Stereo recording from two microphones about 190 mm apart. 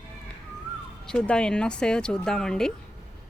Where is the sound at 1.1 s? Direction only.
5° left (ahead or behind).